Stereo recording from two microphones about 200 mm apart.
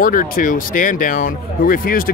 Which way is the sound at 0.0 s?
40° left (ahead or behind).